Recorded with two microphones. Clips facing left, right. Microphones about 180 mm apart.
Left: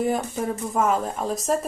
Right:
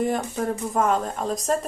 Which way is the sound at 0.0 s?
Centre (ahead or behind).